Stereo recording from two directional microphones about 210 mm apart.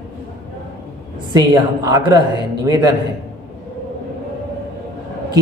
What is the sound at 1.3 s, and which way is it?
Speech, 20° right (ahead or behind).